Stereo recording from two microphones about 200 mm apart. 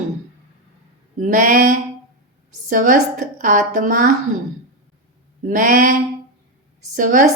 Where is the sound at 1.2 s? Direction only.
40° right (ahead or behind).